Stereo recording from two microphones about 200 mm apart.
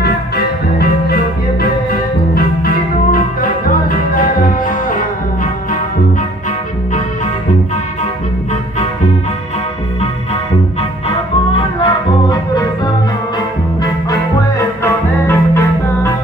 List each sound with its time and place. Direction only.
0.0 s music: 50° left (ahead or behind)
10.8 s music: 30° left (ahead or behind)
14.8 s music: 10° left (ahead or behind)